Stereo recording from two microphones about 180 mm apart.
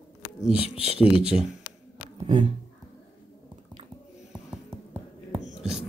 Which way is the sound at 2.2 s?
35° right (ahead or behind).